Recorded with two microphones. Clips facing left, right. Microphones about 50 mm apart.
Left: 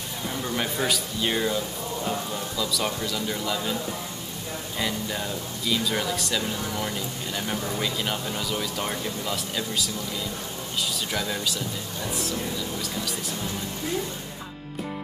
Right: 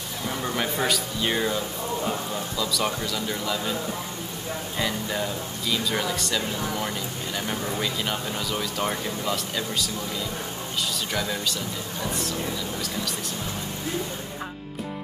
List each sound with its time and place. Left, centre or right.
0.6 s speech: centre
4.7 s speech: centre
11.1 s speech: centre